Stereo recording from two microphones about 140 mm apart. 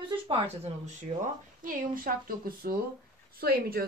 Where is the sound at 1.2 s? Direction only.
70° right (ahead or behind).